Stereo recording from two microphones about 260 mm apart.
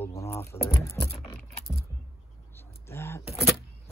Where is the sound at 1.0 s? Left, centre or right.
Centre.